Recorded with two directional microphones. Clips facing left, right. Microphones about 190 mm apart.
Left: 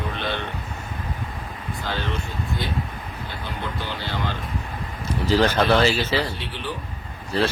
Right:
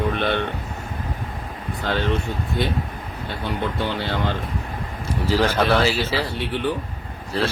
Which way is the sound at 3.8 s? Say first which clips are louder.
Right 5 dB; 60° right (ahead or behind).